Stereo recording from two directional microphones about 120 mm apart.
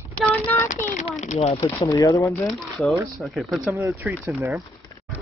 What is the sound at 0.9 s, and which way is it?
Speech, 85° left.